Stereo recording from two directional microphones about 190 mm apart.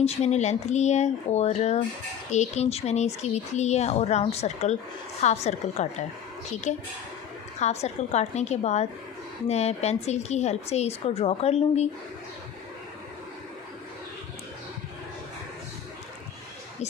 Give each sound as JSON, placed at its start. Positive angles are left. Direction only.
{"t": 0.0, "sound": "speech", "side_deg": 35}